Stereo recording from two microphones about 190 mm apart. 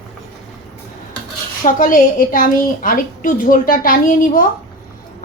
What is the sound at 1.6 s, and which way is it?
A woman's voice, 45° left (ahead or behind).